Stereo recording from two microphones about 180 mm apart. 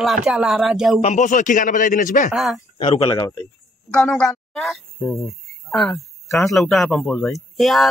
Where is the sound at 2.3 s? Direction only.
Centre (ahead or behind).